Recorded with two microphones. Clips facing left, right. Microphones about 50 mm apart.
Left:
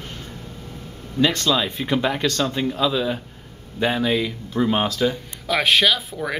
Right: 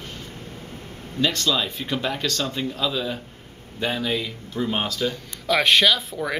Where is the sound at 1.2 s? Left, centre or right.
Centre.